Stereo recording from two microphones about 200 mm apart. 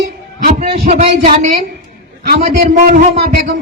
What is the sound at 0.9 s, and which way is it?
Speech, 30° right (ahead or behind).